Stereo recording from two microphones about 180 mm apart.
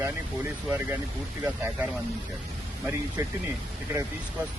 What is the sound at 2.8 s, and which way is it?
Speech, 15° right (ahead or behind).